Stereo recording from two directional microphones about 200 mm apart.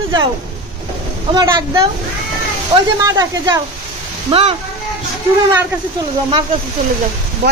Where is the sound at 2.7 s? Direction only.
20° right (ahead or behind).